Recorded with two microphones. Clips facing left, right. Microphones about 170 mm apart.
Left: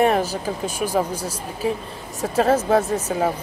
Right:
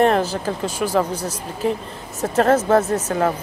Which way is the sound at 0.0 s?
10° left (ahead or behind).